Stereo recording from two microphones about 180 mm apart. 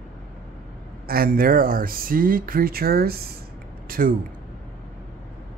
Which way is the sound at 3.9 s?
50° right (ahead or behind).